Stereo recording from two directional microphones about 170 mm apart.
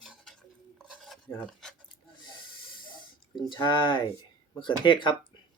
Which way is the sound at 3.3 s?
25° left (ahead or behind).